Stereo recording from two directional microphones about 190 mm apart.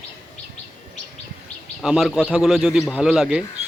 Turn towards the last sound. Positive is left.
turn(degrees=-5)  # may be behind; listen again after turning